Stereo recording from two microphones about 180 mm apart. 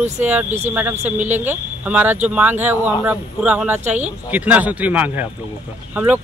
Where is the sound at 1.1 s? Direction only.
40° right (ahead or behind).